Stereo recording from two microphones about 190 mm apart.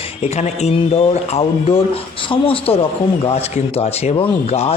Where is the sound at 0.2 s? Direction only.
35° left (ahead or behind).